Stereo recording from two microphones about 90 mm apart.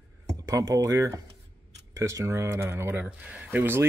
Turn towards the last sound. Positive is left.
turn(degrees=-25)  # may be behind; listen again after turning